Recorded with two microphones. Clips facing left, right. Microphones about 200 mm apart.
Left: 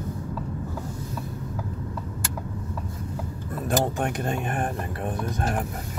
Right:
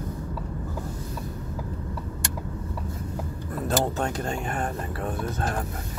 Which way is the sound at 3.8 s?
20° left (ahead or behind).